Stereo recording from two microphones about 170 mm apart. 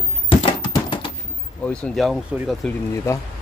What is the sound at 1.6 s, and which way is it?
Speech, 5° left (ahead or behind).